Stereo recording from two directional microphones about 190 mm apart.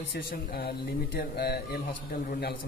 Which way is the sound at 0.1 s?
55° left (ahead or behind).